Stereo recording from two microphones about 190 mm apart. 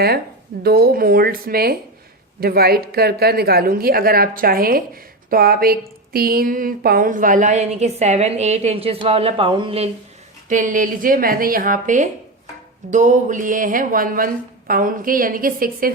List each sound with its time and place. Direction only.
0.6 s a woman's voice: 55° right (ahead or behind); by 9.9 s 30° right (ahead or behind)
10.5 s a woman's voice: 45° right (ahead or behind)